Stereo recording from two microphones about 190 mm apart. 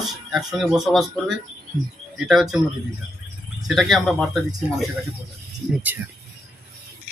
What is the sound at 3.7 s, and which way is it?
Speech, centre (ahead or behind).